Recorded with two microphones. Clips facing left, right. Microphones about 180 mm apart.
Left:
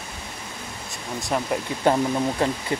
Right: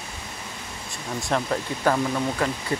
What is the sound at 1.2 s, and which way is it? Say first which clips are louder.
Speech: even; 5° left (ahead or behind).